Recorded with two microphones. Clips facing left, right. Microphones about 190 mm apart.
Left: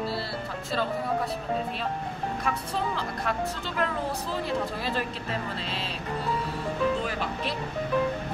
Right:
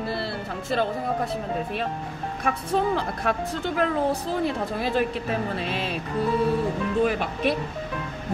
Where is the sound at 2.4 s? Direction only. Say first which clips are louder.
Right 8 dB; 55° right (ahead or behind).